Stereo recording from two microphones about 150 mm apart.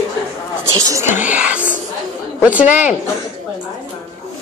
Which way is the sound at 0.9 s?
15° right (ahead or behind).